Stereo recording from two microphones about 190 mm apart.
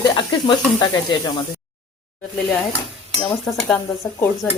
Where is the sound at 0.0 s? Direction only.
25° left (ahead or behind).